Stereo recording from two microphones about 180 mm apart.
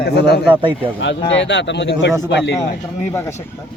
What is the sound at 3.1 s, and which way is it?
Speech, 15° left (ahead or behind).